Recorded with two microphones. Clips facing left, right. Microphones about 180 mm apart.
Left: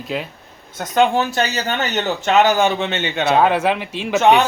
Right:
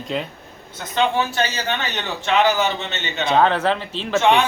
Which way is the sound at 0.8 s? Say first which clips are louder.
Left 4 dB; 45° left (ahead or behind).